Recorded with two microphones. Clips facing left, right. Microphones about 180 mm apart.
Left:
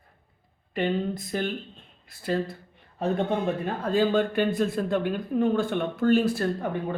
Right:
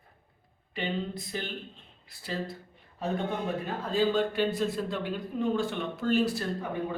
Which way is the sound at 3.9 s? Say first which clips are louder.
Left 3 dB; 55° left (ahead or behind).